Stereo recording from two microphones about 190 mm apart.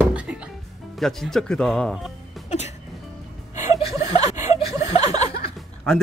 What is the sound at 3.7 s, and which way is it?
Chuckle, 15° right (ahead or behind).